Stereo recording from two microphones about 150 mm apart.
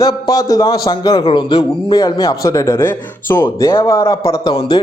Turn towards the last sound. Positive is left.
turn(degrees=25)  # may be behind; listen again after turning